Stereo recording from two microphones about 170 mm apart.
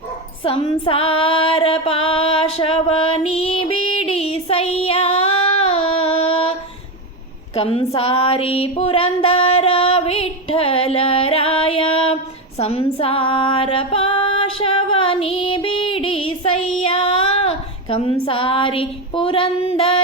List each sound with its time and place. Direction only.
0.4 s female singing: 35° left (ahead or behind)
7.5 s female singing: 35° left (ahead or behind)